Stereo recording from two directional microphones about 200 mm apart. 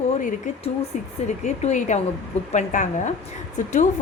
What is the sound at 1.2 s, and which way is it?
A woman's voice, 35° left (ahead or behind).